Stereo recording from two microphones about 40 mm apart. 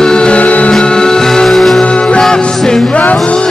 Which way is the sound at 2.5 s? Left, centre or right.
Centre.